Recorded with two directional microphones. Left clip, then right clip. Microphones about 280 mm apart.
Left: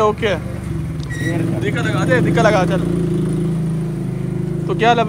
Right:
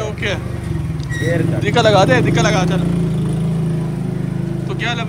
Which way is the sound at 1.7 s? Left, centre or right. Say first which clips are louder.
Right 8 dB; centre.